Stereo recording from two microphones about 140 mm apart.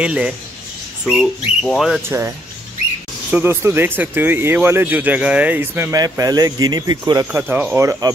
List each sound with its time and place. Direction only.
0.0 s speech: 10° right (ahead or behind)
2.0 s speech: 15° right (ahead or behind)
7.3 s speech: 10° right (ahead or behind)